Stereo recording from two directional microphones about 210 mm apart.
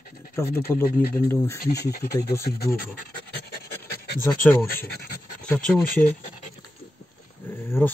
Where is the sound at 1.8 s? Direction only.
50° left (ahead or behind).